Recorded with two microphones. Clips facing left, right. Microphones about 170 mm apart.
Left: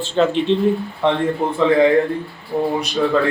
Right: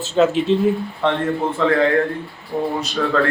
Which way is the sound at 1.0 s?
15° left (ahead or behind).